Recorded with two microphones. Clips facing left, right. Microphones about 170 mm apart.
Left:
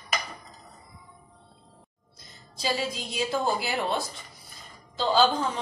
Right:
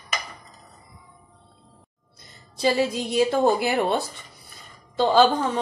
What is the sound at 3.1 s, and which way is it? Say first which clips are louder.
Speech: right 8 dB; 65° right (ahead or behind).